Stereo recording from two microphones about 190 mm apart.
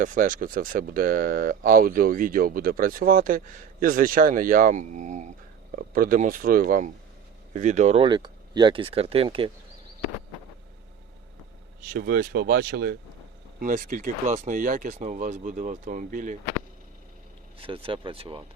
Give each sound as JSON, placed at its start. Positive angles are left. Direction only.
{"t": 0.0, "sound": "speech", "side_deg": -45}
{"t": 11.9, "sound": "speech", "side_deg": -50}
{"t": 17.6, "sound": "speech", "side_deg": -30}